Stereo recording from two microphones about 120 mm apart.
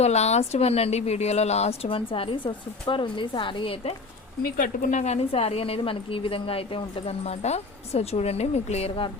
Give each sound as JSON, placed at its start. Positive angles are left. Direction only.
{"t": 0.0, "sound": "a woman's voice", "side_deg": 65}
{"t": 4.9, "sound": "a woman's voice", "side_deg": 80}